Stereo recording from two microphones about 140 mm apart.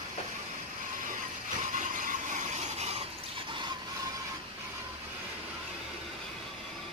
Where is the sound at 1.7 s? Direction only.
65° right (ahead or behind); by 3.0 s 50° right (ahead or behind).